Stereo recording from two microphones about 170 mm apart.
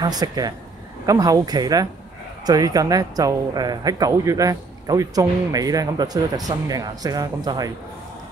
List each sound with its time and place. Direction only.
0.0 s speech: 25° right (ahead or behind)